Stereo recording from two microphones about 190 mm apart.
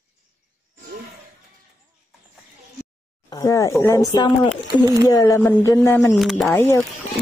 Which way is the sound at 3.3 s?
15° left (ahead or behind).